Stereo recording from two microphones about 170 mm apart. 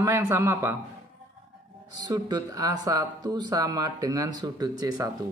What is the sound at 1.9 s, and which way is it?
Speech, 25° right (ahead or behind).